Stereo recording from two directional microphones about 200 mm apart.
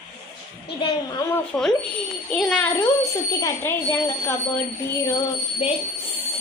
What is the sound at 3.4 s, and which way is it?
A child's voice, 15° left (ahead or behind).